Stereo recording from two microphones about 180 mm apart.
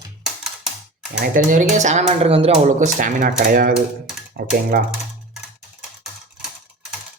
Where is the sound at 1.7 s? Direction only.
40° right (ahead or behind).